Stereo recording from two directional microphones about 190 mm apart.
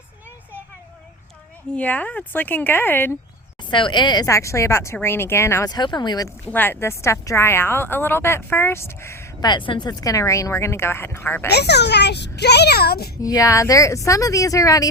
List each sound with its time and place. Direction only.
1.7 s a woman's voice: 10° left (ahead or behind)
3.6 s a woman's voice: 25° left (ahead or behind)
6.2 s a woman's voice: 10° left (ahead or behind)
11.5 s a child's voice: 60° left (ahead or behind)
13.2 s a woman's voice: 15° left (ahead or behind)